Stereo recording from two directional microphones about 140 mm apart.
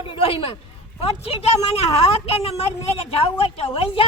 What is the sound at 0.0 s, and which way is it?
A woman's voice, 40° left (ahead or behind).